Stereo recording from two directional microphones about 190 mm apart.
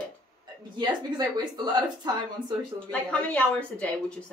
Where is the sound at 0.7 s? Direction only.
20° right (ahead or behind).